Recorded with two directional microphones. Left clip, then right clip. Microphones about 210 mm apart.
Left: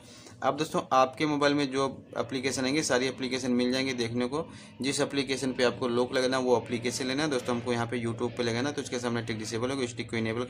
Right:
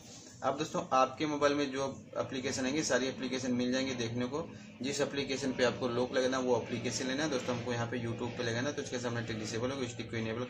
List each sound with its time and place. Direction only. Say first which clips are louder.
0.4 s a man's voice: left 5 dB; 40° left (ahead or behind)